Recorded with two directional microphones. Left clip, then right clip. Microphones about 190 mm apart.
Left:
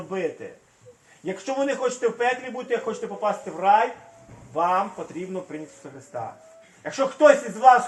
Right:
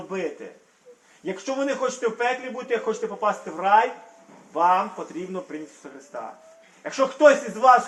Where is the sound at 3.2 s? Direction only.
30° right (ahead or behind).